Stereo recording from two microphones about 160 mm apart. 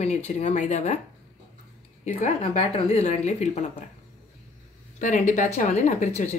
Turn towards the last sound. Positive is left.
turn(degrees=45)  # may be behind; listen again after turning